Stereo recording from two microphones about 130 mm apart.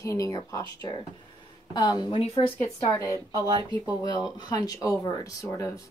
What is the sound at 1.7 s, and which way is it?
A woman's voice, 30° left (ahead or behind).